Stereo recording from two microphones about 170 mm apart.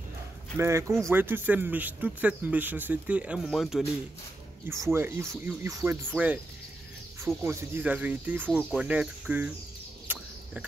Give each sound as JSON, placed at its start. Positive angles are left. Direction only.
{"t": 0.6, "sound": "speech", "side_deg": -15}
{"t": 4.6, "sound": "speech", "side_deg": -15}
{"t": 7.4, "sound": "speech", "side_deg": -10}
{"t": 10.1, "sound": "a sound", "side_deg": -10}